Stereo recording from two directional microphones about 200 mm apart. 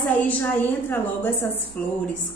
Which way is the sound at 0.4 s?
10° left (ahead or behind).